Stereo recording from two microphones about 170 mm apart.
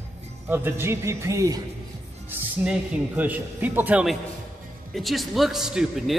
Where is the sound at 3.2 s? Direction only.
10° right (ahead or behind).